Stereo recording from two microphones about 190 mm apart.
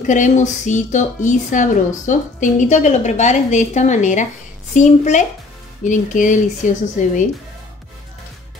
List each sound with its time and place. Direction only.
0.0 s speech: 40° left (ahead or behind)